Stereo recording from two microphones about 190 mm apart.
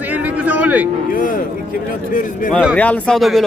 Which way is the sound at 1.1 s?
45° left (ahead or behind).